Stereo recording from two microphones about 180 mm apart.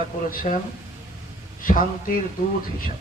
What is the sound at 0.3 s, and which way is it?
Speech, 45° left (ahead or behind).